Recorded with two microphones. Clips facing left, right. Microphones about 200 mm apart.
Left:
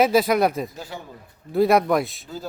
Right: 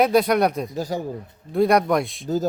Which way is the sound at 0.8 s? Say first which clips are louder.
Right 10 dB; 40° right (ahead or behind).